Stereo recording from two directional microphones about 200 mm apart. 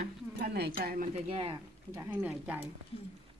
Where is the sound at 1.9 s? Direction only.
10° right (ahead or behind).